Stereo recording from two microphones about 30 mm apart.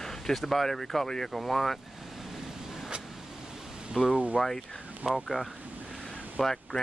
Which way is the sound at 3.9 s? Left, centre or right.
Centre.